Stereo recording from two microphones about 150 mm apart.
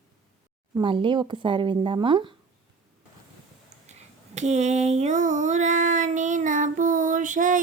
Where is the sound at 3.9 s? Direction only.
50° right (ahead or behind).